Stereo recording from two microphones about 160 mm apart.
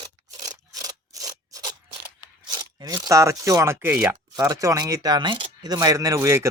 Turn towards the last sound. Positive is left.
turn(degrees=-15)  # may be behind; listen again after turning